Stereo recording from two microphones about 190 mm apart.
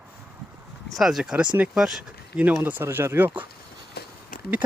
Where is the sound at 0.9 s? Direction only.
Centre (ahead or behind).